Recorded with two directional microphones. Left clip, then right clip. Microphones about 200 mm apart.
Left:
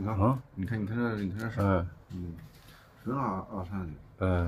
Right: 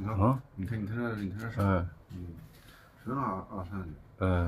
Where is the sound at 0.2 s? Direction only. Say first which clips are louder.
Even; centre (ahead or behind).